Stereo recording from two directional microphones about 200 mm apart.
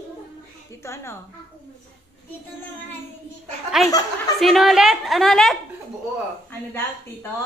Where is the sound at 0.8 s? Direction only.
15° left (ahead or behind).